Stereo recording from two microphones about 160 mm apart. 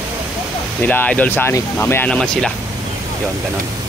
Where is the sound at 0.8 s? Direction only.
10° left (ahead or behind).